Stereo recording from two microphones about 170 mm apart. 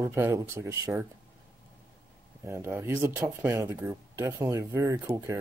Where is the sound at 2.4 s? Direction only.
15° right (ahead or behind).